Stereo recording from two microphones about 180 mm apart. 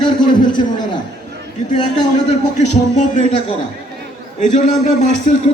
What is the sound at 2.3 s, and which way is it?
A man's voice, 40° left (ahead or behind).